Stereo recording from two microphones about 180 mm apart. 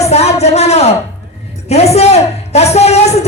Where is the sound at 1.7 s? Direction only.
35° left (ahead or behind).